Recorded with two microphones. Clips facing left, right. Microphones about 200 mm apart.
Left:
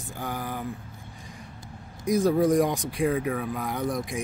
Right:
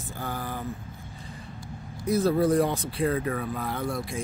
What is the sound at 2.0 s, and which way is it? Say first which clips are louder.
Speech: left 1 dB; 15° left (ahead or behind).